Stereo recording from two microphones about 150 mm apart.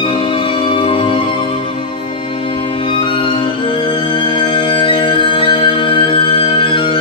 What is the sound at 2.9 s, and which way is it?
Violin, 35° left (ahead or behind).